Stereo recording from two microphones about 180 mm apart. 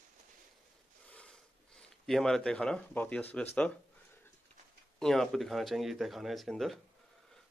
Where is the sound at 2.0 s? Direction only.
Centre (ahead or behind).